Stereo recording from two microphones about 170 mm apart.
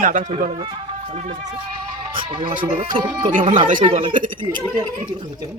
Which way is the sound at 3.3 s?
50° right (ahead or behind).